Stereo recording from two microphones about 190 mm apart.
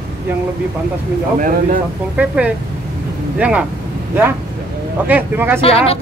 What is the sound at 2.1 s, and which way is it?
Speech, 5° right (ahead or behind).